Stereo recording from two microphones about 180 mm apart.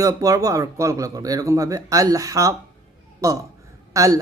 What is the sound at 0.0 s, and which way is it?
A man's voice, 20° right (ahead or behind).